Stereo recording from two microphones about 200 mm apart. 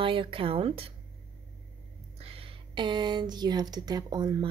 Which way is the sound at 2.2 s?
30° right (ahead or behind).